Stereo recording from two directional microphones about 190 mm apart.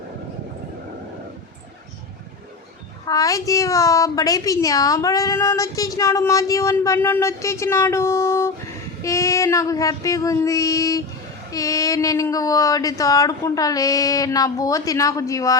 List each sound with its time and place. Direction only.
3.1 s a woman's voice: 20° left (ahead or behind)